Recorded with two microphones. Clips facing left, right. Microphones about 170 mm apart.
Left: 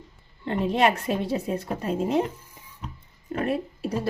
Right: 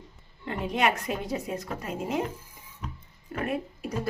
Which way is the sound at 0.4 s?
30° left (ahead or behind).